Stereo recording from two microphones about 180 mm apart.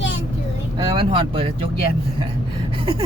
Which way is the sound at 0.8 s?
30° right (ahead or behind).